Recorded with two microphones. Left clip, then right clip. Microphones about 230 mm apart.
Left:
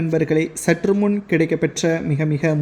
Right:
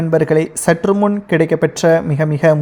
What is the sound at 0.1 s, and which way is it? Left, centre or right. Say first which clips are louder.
A woman's voice: right 6 dB; right.